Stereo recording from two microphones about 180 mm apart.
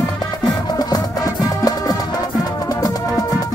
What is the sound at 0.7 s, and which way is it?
Music, 20° left (ahead or behind).